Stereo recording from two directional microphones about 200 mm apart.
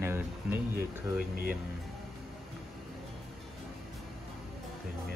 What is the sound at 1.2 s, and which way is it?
Speech, 45° right (ahead or behind).